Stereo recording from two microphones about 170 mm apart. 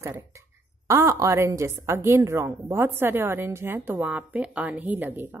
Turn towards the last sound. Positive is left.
turn(degrees=-10)  # may be behind; listen again after turning